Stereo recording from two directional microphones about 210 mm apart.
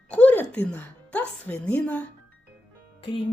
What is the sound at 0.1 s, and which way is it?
A woman's voice, 5° left (ahead or behind).